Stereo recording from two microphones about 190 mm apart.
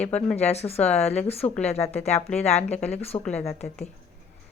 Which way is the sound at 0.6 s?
5° left (ahead or behind).